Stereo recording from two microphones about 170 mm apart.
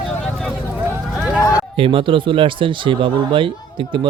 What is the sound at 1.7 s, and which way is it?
Speech, 30° right (ahead or behind).